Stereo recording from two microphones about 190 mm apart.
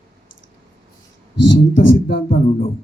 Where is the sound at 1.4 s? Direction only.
70° left (ahead or behind).